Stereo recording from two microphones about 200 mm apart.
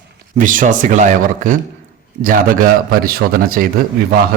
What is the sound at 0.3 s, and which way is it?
A man's voice, 40° right (ahead or behind).